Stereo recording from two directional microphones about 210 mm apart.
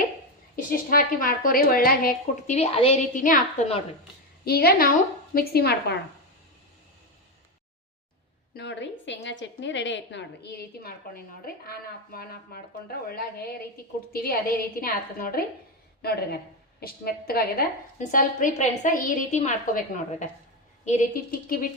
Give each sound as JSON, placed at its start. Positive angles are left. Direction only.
{"t": 0.5, "sound": "a woman's voice", "side_deg": 40}
{"t": 4.4, "sound": "a woman's voice", "side_deg": 45}
{"t": 8.5, "sound": "a woman's voice", "side_deg": 55}